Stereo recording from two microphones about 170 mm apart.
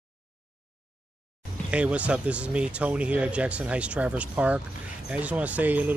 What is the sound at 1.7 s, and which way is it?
A man's voice, 5° right (ahead or behind).